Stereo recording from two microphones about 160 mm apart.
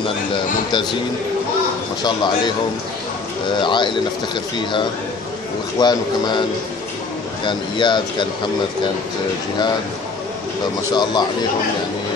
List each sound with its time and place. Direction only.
2.0 s speech: 30° left (ahead or behind)
3.5 s speech: 30° left (ahead or behind)
5.8 s speech: 25° left (ahead or behind)
7.4 s speech: 30° left (ahead or behind)
10.9 s speech: 25° left (ahead or behind)